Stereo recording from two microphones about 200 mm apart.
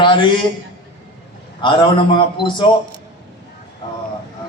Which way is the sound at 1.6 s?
25° left (ahead or behind).